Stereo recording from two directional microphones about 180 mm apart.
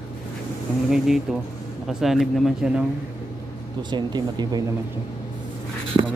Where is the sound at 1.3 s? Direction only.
Centre (ahead or behind).